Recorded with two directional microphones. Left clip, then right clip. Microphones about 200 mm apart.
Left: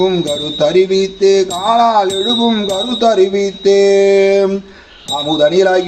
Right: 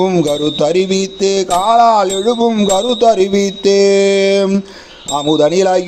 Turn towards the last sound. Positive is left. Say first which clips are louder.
# even
turn(degrees=-40)  # may be behind; listen again after turning